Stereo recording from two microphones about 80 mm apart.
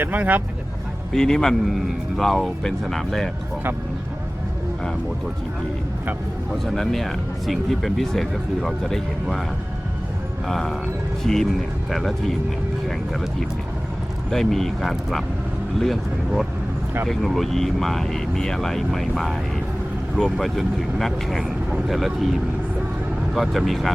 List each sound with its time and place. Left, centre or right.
0.0 s speech: right
1.1 s speech: centre
6.5 s speech: centre
10.4 s speech: centre
14.3 s speech: centre
23.3 s speech: centre